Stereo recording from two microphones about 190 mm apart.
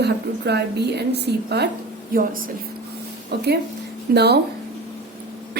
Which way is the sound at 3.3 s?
60° right (ahead or behind).